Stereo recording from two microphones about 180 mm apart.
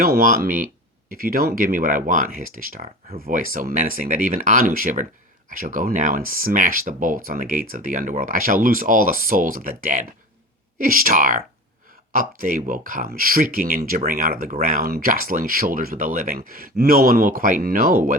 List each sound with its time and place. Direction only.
0.0 s speech: 55° right (ahead or behind)